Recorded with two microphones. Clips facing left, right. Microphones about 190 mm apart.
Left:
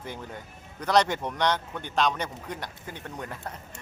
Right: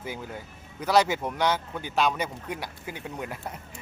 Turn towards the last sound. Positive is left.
turn(degrees=-10)  # may be behind; listen again after turning